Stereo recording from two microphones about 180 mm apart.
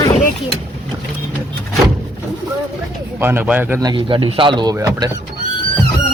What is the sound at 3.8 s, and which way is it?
Speech, 25° right (ahead or behind).